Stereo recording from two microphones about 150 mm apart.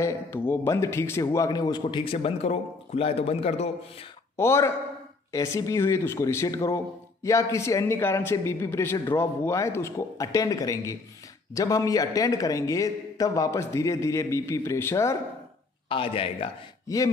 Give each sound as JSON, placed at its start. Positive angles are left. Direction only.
{"t": 0.0, "sound": "speech", "side_deg": 15}
{"t": 2.1, "sound": "a man's voice", "side_deg": 40}
{"t": 4.4, "sound": "a man's voice", "side_deg": 15}
{"t": 15.9, "sound": "a man's voice", "side_deg": 35}
{"t": 16.8, "sound": "chopping", "side_deg": 20}